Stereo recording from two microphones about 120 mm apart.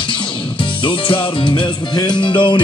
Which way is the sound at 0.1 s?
45° left (ahead or behind).